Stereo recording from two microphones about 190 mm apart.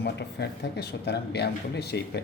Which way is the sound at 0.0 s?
60° left (ahead or behind).